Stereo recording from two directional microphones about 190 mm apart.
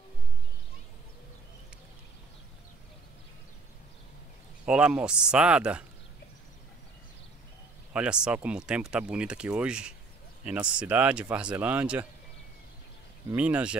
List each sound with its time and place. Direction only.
4.6 s speech: 5° right (ahead or behind)
7.9 s speech: 5° right (ahead or behind)
13.3 s speech: 5° right (ahead or behind)